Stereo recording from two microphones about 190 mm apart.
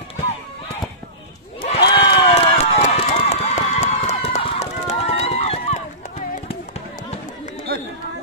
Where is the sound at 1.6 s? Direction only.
30° left (ahead or behind).